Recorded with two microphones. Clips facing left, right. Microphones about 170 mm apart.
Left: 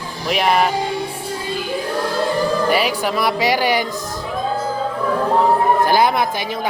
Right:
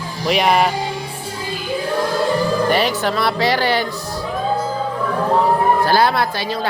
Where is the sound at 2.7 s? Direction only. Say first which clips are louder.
Even; 10° left (ahead or behind).